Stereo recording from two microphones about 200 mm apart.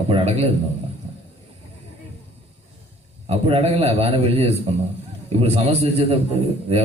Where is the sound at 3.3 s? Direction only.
30° right (ahead or behind).